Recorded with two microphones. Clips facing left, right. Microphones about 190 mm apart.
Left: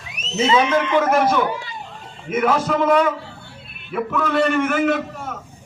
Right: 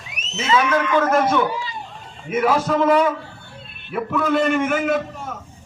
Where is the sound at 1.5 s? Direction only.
55° left (ahead or behind).